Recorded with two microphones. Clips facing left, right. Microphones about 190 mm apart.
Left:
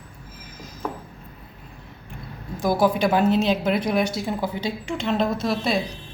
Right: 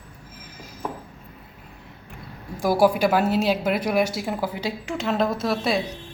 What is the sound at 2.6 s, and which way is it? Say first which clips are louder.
A woman's voice: right 1 dB; 10° right (ahead or behind).